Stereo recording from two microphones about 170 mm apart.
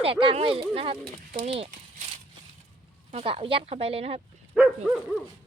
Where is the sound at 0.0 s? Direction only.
30° right (ahead or behind).